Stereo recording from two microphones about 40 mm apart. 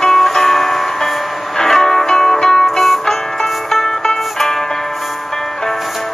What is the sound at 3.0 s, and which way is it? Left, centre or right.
Music, centre.